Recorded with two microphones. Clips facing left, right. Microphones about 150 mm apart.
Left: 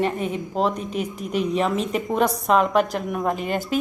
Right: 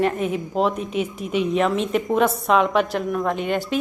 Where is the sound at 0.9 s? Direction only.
40° left (ahead or behind).